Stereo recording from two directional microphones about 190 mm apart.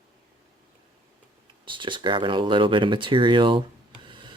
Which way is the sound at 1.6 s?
25° right (ahead or behind).